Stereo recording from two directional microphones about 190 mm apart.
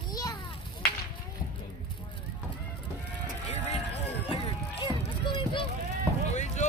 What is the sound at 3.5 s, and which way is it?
Run, 35° left (ahead or behind).